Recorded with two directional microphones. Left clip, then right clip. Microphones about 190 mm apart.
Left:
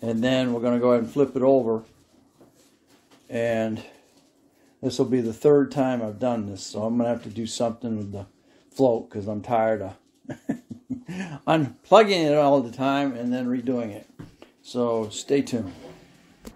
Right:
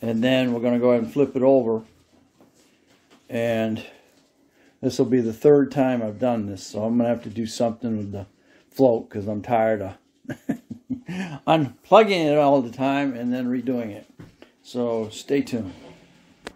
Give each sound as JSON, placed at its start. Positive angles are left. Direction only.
{"t": 0.0, "sound": "speech", "side_deg": -15}
{"t": 3.3, "sound": "speech", "side_deg": -20}